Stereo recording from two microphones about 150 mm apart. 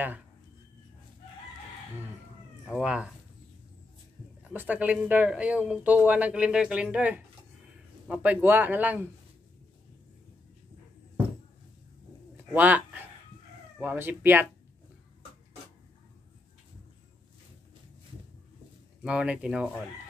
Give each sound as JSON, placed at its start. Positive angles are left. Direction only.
{"t": 2.7, "sound": "speech", "side_deg": -5}
{"t": 4.5, "sound": "speech", "side_deg": -10}
{"t": 12.5, "sound": "speech", "side_deg": -10}
{"t": 19.0, "sound": "speech", "side_deg": -10}